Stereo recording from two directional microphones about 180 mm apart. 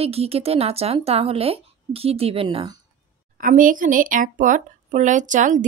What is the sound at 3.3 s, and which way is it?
A woman's voice, 50° right (ahead or behind).